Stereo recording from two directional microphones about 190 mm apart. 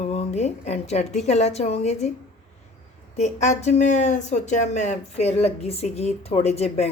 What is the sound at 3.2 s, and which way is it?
Speech, 35° left (ahead or behind).